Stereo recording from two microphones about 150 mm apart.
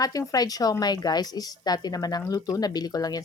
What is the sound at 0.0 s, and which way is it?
A woman's voice, 25° left (ahead or behind).